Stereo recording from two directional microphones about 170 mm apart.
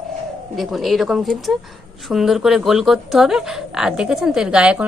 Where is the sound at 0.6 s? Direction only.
Centre (ahead or behind).